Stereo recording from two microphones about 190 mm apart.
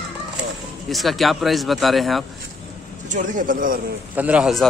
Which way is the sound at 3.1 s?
45° right (ahead or behind).